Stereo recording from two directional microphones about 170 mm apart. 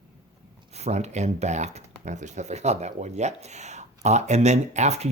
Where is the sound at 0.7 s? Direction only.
40° right (ahead or behind).